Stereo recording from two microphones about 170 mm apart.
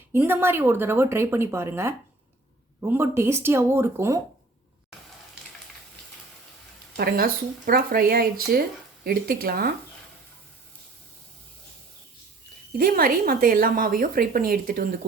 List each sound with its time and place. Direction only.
0.1 s speech: 15° right (ahead or behind)
6.9 s a woman's voice: 60° right (ahead or behind)
12.7 s a woman's voice: 60° right (ahead or behind)